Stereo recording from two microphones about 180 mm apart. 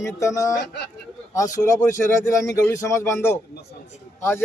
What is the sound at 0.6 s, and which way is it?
Speech, 70° left (ahead or behind).